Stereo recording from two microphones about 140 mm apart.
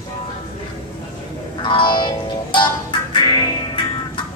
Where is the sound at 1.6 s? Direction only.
35° left (ahead or behind).